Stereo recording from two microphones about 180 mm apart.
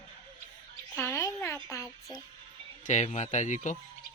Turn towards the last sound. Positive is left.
turn(degrees=45)  # may be behind; listen again after turning